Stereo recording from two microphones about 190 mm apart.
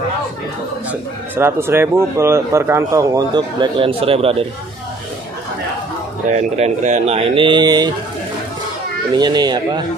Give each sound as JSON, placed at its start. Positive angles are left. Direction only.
{"t": 1.3, "sound": "speech", "side_deg": -10}
{"t": 6.3, "sound": "speech", "side_deg": -35}
{"t": 9.1, "sound": "speech", "side_deg": -20}